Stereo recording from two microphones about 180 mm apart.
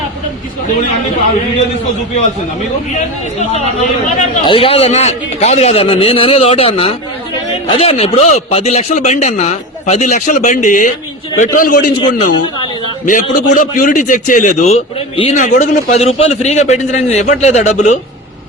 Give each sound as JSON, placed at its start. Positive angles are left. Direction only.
{"t": 4.4, "sound": "a man's voice", "side_deg": 30}
{"t": 13.1, "sound": "a man's voice", "side_deg": 45}
{"t": 15.4, "sound": "speech", "side_deg": 45}